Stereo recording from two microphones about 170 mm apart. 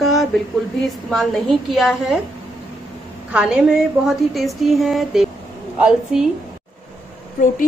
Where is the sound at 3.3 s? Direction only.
5° right (ahead or behind).